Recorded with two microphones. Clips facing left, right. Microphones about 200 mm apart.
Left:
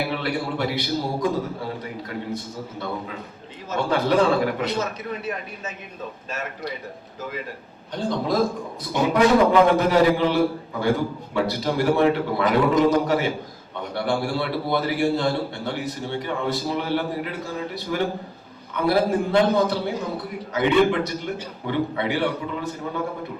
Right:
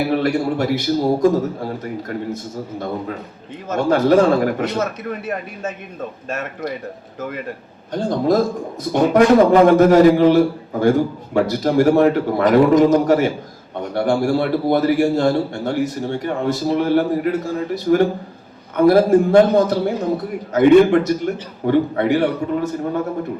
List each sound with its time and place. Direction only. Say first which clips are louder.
0.1 s a man's voice: right 8 dB; 45° right (ahead or behind)
7.9 s a man's voice: right 6 dB; 45° right (ahead or behind)